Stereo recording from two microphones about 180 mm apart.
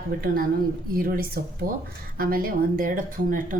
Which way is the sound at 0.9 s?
55° right (ahead or behind).